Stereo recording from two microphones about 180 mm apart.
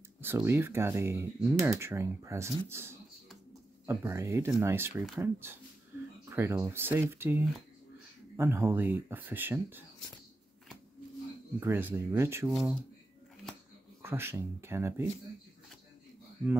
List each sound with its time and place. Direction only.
0.2 s speech: 15° right (ahead or behind)
11.6 s speech: 15° right (ahead or behind)
14.0 s speech: 15° right (ahead or behind)